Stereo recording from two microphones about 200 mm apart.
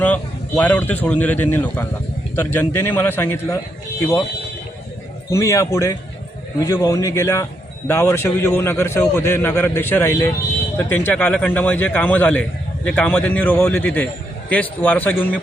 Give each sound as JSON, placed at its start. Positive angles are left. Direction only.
{"t": 0.0, "sound": "a man's voice", "side_deg": 10}
{"t": 5.3, "sound": "a man's voice", "side_deg": 15}